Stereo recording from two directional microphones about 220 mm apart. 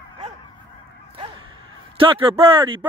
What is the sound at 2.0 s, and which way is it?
Speech, 25° right (ahead or behind).